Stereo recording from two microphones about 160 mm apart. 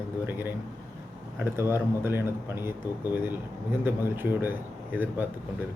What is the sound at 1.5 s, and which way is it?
Speech, 15° right (ahead or behind).